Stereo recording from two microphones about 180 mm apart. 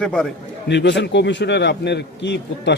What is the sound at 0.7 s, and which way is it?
A man's voice, 75° left (ahead or behind).